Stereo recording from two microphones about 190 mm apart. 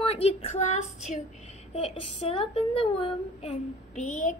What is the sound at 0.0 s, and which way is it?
Speech, 30° left (ahead or behind).